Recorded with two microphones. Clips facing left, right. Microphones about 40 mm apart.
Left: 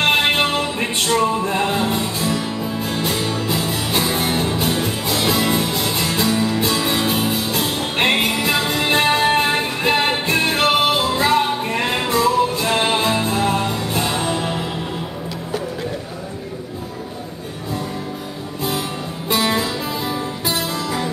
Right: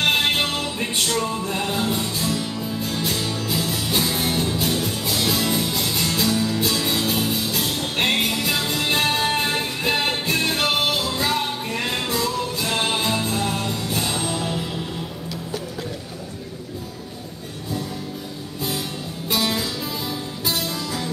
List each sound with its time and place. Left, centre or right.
0.0 s music: centre
18.6 s music: centre